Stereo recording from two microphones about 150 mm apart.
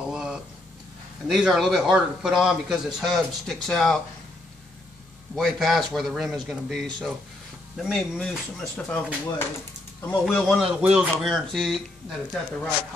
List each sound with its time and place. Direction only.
0.1 s a sound: 5° right (ahead or behind)
1.2 s a man's voice: centre (ahead or behind)
5.3 s a man's voice: centre (ahead or behind)